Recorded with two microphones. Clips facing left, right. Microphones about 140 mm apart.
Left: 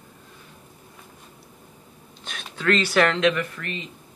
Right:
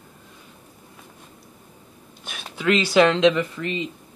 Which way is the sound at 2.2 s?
10° right (ahead or behind).